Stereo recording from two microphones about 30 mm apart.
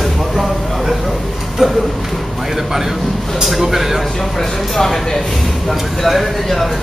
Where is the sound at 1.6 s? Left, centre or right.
Centre.